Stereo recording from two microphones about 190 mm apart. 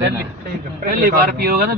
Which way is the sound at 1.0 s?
55° right (ahead or behind).